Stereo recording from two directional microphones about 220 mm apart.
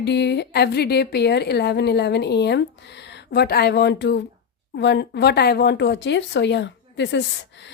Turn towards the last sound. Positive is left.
turn(degrees=55)  # may be behind; listen again after turning